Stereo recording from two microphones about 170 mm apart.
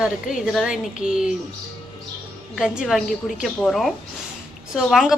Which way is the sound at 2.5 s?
5° right (ahead or behind).